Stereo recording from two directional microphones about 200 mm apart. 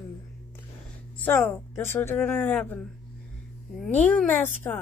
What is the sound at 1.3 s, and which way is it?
A woman's voice, 10° left (ahead or behind).